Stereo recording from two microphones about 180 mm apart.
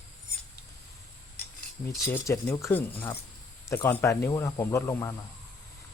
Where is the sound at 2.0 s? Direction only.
15° left (ahead or behind).